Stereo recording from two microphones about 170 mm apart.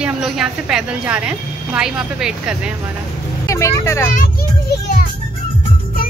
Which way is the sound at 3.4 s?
15° left (ahead or behind).